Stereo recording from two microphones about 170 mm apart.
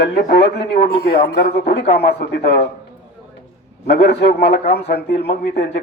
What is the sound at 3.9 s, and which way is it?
Speech, 75° left (ahead or behind).